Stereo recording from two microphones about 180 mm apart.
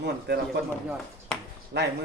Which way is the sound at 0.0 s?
65° right (ahead or behind).